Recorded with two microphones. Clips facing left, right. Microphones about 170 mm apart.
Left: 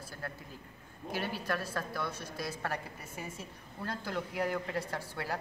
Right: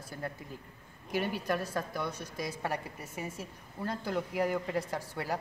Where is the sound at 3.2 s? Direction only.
5° right (ahead or behind).